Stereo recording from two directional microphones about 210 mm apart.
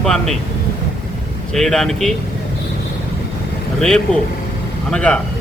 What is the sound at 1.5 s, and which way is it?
Speech, centre (ahead or behind).